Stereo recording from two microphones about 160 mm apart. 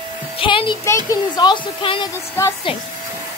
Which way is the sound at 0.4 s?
30° left (ahead or behind).